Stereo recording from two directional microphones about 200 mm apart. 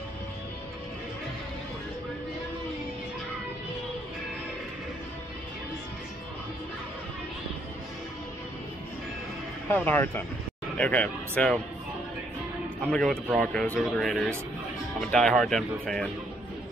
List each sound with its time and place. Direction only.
9.7 s speech: 10° left (ahead or behind)
12.8 s speech: 5° left (ahead or behind)